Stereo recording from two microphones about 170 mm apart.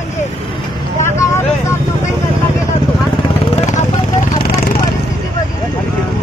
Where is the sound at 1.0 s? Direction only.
15° left (ahead or behind).